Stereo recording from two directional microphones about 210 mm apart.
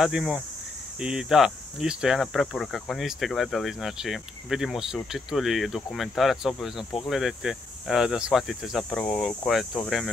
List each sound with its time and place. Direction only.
0.0 s speech: 5° right (ahead or behind)
6.8 s speech: 25° left (ahead or behind)
7.1 s speech: centre (ahead or behind)